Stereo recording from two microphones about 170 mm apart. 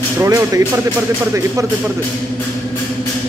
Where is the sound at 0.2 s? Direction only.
20° right (ahead or behind).